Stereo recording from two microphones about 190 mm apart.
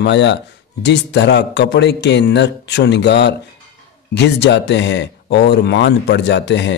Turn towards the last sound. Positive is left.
turn(degrees=65)  # may be behind; listen again after turning